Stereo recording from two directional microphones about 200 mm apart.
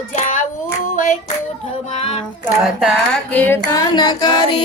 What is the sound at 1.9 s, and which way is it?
Child singing, 35° left (ahead or behind).